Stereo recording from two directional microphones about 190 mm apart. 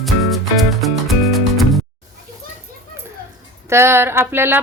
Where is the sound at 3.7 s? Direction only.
15° right (ahead or behind).